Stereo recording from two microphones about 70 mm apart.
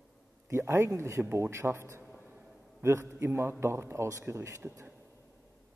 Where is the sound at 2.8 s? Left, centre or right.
Right.